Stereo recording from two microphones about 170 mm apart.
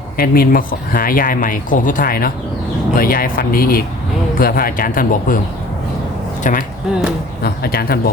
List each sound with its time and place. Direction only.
0.2 s speech: 60° left (ahead or behind)
6.4 s speech: 50° left (ahead or behind)
7.4 s speech: 65° left (ahead or behind)